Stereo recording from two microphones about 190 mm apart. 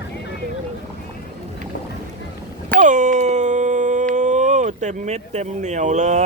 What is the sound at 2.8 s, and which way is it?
Speech, 40° right (ahead or behind).